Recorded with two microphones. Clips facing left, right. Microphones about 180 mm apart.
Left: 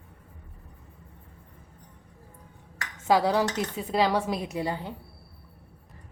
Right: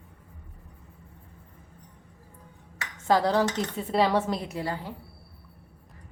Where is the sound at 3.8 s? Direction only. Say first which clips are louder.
Right 1 dB; centre (ahead or behind).